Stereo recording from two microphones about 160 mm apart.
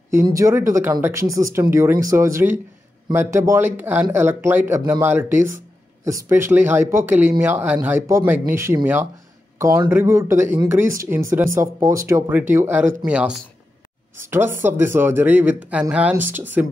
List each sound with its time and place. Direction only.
0.1 s speech: 20° right (ahead or behind)